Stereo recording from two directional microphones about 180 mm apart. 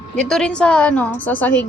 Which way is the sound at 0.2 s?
5° left (ahead or behind).